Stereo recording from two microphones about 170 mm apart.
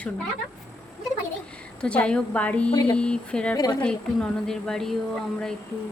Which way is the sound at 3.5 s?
20° left (ahead or behind).